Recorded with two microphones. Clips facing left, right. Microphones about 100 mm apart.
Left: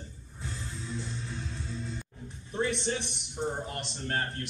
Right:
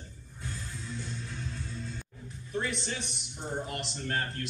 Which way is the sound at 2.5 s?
25° left (ahead or behind).